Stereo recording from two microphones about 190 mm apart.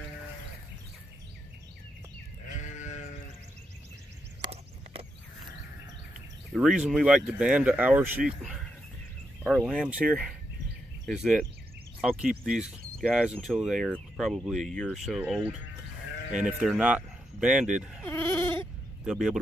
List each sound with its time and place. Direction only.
2.4 s sheep: 40° left (ahead or behind)
6.5 s speech: 5° right (ahead or behind)
18.0 s bleat: 10° left (ahead or behind)
19.0 s speech: 5° right (ahead or behind)